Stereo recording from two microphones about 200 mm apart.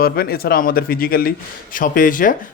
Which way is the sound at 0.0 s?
50° left (ahead or behind).